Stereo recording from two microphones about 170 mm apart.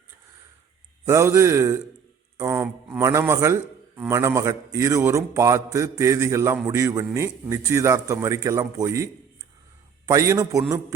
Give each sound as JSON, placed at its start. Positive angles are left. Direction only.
{"t": 1.0, "sound": "a man's voice", "side_deg": -15}
{"t": 10.1, "sound": "a man's voice", "side_deg": -20}